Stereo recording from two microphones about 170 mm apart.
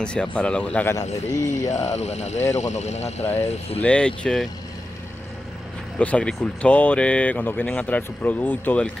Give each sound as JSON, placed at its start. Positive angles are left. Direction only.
{"t": 0.0, "sound": "speech", "side_deg": 5}
{"t": 1.9, "sound": "speech", "side_deg": 40}
{"t": 3.8, "sound": "speech", "side_deg": 5}
{"t": 5.9, "sound": "speech", "side_deg": 5}